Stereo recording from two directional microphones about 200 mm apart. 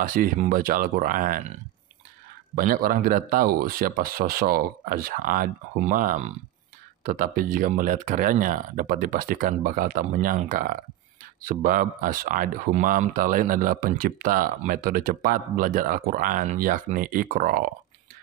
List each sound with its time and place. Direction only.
0.0 s speech: 45° right (ahead or behind)
2.5 s speech: 45° right (ahead or behind)